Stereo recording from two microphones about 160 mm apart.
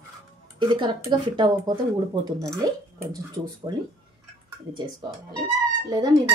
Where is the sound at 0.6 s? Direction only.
25° right (ahead or behind).